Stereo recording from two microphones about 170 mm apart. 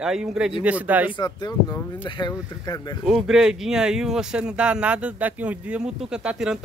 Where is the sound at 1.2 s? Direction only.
25° left (ahead or behind).